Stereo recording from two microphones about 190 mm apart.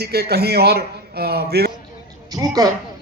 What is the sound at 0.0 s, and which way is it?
A man's voice, 55° right (ahead or behind).